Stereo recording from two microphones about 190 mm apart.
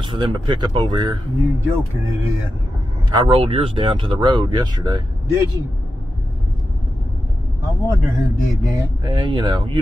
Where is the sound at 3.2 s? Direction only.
25° right (ahead or behind).